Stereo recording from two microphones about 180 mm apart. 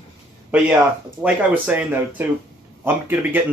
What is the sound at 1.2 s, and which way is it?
Speech, 10° right (ahead or behind).